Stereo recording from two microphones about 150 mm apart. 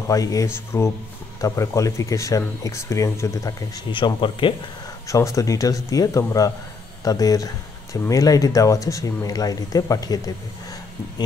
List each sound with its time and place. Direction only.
0.1 s speech: 25° left (ahead or behind)
5.0 s speech: 20° left (ahead or behind)